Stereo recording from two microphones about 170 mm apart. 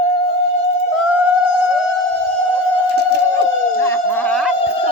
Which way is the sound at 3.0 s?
80° right.